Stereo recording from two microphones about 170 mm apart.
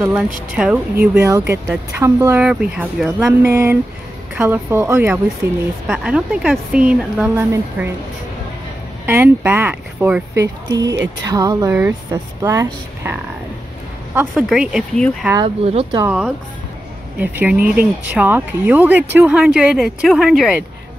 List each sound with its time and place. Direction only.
0.0 s speech: 5° right (ahead or behind)
9.0 s speech: 15° right (ahead or behind)
10.7 s speech: 20° right (ahead or behind)
14.1 s speech: 5° right (ahead or behind)
15.3 s speech: 35° right (ahead or behind)
16.1 s speech: 5° right (ahead or behind)